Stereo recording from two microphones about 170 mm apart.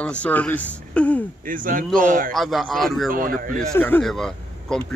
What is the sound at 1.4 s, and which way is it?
Speech, 55° right (ahead or behind).